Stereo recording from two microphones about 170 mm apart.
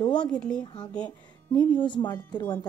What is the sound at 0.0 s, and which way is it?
Speech, 25° left (ahead or behind).